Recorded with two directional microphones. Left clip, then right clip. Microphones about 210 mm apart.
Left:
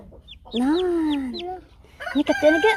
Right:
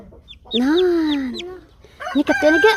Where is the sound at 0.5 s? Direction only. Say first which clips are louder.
Right 5 dB; 10° right (ahead or behind).